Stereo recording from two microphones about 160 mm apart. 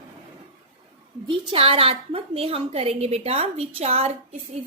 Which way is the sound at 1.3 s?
35° right (ahead or behind).